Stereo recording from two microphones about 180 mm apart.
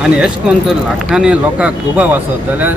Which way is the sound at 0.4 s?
5° right (ahead or behind).